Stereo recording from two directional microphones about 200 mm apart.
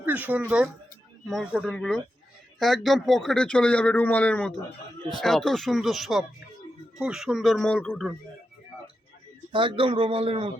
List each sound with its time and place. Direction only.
0.0 s speech: 10° right (ahead or behind)
9.5 s a man's voice: 25° right (ahead or behind)